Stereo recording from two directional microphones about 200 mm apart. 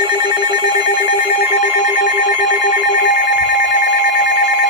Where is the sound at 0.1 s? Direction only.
20° right (ahead or behind).